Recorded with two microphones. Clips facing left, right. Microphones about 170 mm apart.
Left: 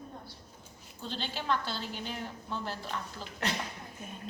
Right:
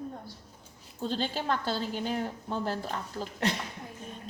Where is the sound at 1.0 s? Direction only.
45° right (ahead or behind).